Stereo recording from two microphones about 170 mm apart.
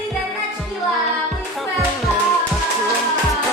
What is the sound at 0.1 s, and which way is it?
Music, centre (ahead or behind).